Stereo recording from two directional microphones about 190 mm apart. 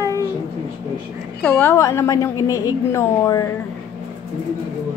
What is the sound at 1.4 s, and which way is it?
A woman's voice, 5° left (ahead or behind).